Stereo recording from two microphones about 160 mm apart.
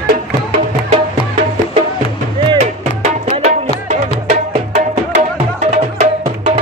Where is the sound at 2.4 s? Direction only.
45° right (ahead or behind).